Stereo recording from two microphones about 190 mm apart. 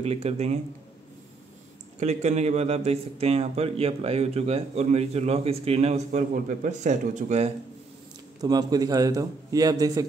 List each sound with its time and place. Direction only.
0.0 s speech: 30° right (ahead or behind)
2.0 s speech: 35° right (ahead or behind)
8.4 s a man's voice: 20° right (ahead or behind)